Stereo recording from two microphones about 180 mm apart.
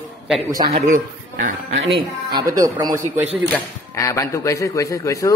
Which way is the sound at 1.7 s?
80° right.